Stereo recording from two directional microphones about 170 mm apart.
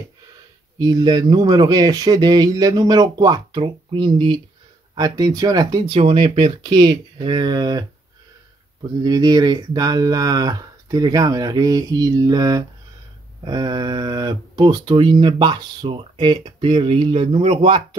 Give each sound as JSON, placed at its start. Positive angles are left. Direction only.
{"t": 0.7, "sound": "speech", "side_deg": -25}
{"t": 9.0, "sound": "speech", "side_deg": -25}